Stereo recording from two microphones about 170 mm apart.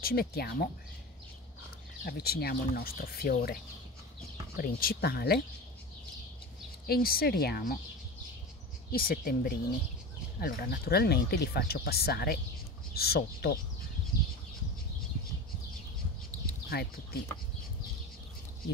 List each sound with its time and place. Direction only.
0.0 s speech: 65° left (ahead or behind)
2.0 s speech: 65° left (ahead or behind)
4.6 s speech: 60° left (ahead or behind)
6.9 s speech: 60° left (ahead or behind)
8.9 s speech: 60° left (ahead or behind)
16.6 s speech: 65° left (ahead or behind)